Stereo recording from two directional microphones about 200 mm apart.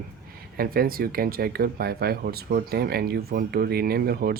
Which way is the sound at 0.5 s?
50° right (ahead or behind).